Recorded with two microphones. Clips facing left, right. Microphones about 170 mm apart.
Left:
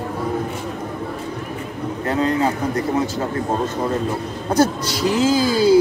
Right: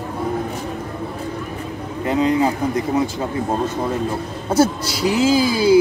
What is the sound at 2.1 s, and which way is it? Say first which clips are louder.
Speech: right 3 dB; 15° right (ahead or behind).